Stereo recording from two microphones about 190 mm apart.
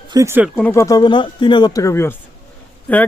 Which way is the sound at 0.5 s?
10° left (ahead or behind).